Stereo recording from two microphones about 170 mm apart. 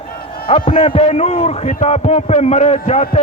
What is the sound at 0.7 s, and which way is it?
A man's voice, 35° left (ahead or behind).